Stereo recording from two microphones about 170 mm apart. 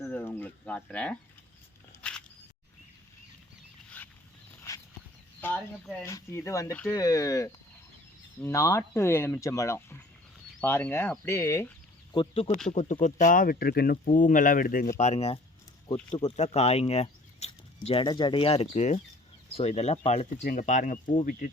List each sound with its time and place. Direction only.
0.1 s a sound: 10° left (ahead or behind)
3.8 s a sound: 10° left (ahead or behind)
5.4 s speech: 10° left (ahead or behind)
12.1 s speech: 30° left (ahead or behind)
12.7 s speech: 45° left (ahead or behind)
14.9 s speech: 40° left (ahead or behind)
18.0 s speech: 25° left (ahead or behind)
20.4 s speech: 50° left (ahead or behind)